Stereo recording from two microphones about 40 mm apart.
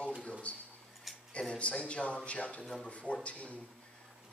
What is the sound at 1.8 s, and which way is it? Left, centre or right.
A man's voice, left.